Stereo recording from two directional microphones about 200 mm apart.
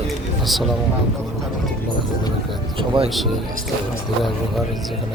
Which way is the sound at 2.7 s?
25° right (ahead or behind).